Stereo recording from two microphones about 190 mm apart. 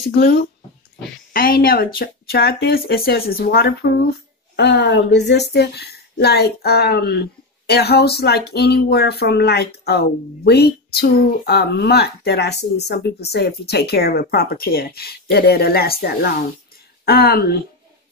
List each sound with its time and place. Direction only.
0.2 s speech: 55° left (ahead or behind)